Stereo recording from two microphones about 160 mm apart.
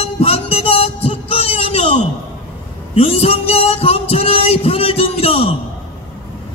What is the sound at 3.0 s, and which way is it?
Music, 40° left (ahead or behind).